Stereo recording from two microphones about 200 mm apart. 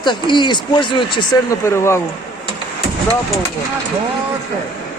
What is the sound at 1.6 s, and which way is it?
Speech, 15° left (ahead or behind).